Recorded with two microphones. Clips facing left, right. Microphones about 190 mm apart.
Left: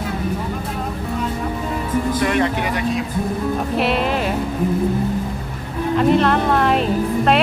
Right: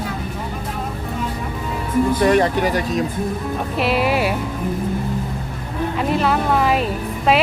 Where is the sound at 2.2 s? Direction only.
35° right (ahead or behind).